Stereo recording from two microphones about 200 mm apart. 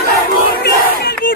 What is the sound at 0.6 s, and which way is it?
Battle cry, 55° left (ahead or behind).